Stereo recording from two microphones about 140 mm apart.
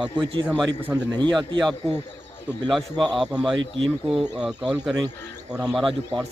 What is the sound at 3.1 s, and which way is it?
A man's voice, 5° right (ahead or behind).